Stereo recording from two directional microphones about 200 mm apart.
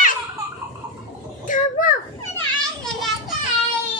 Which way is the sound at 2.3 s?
Centre (ahead or behind).